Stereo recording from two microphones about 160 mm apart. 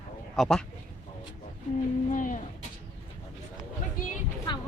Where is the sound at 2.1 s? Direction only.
55° left (ahead or behind).